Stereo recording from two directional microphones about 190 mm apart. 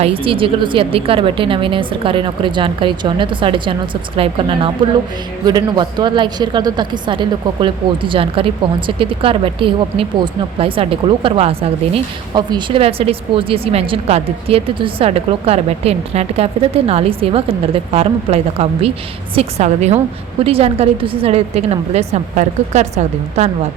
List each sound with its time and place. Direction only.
0.0 s a woman's voice: 30° right (ahead or behind)